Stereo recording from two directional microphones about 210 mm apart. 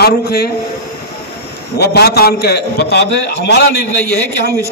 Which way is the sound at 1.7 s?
50° left (ahead or behind).